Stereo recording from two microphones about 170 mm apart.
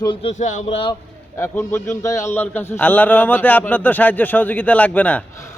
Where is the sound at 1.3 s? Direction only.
15° left (ahead or behind).